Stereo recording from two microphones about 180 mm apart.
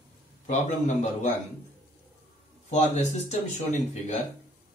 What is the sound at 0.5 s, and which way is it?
Speech, 40° left (ahead or behind).